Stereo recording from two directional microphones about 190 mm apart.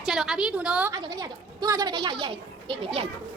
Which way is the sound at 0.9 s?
20° right (ahead or behind).